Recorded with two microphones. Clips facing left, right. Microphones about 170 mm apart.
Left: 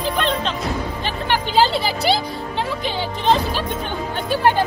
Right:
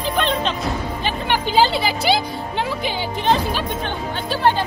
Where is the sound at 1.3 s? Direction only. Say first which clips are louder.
Even; centre (ahead or behind).